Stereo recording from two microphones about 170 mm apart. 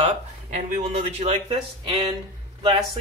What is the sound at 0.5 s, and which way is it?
Speech, 40° right (ahead or behind).